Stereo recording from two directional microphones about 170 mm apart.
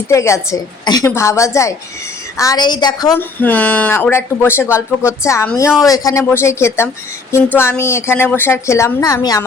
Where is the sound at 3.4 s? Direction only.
10° left (ahead or behind).